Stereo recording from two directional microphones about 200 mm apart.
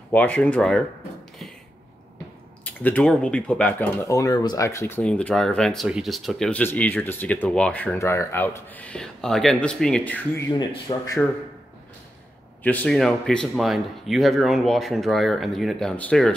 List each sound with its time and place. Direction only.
0.1 s speech: 5° left (ahead or behind)
2.6 s speech: 10° left (ahead or behind)
10.6 s speech: 20° left (ahead or behind)
12.6 s speech: 5° left (ahead or behind)